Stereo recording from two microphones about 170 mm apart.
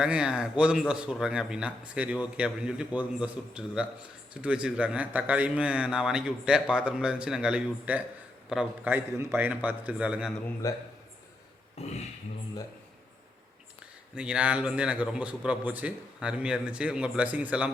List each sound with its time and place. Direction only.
0.0 s a man's voice: 5° right (ahead or behind)
10.6 s a man's voice: 20° left (ahead or behind)
11.8 s speech: 35° left (ahead or behind)
14.2 s a man's voice: 5° right (ahead or behind)